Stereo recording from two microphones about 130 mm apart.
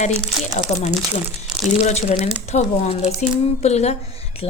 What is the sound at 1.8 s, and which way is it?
A woman's voice, 60° left (ahead or behind).